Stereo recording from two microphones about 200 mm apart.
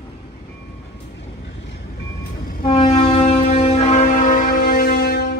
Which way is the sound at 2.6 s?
30° left (ahead or behind).